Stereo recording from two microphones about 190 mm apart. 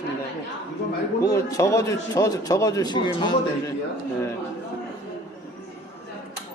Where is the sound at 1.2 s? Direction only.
15° left (ahead or behind).